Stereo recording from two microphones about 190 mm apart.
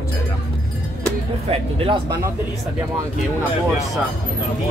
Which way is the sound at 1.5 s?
30° right (ahead or behind).